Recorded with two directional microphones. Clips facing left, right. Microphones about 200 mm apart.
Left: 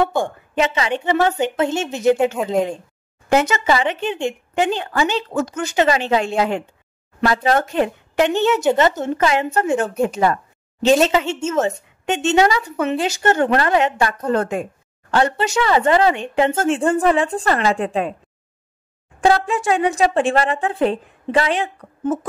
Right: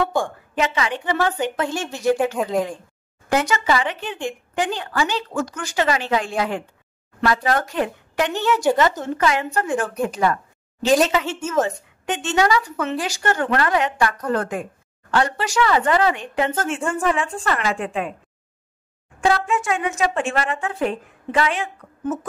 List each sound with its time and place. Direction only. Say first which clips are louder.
0.0 s a woman's voice: left 3 dB; 25° left (ahead or behind)
19.2 s speech: left 3 dB; 35° left (ahead or behind)